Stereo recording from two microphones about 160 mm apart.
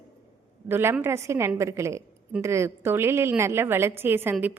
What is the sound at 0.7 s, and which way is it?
A woman's voice, 15° right (ahead or behind).